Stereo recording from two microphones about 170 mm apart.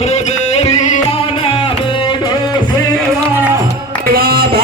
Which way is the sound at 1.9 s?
30° left (ahead or behind).